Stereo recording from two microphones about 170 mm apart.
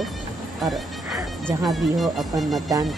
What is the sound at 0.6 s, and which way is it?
Speech, centre (ahead or behind).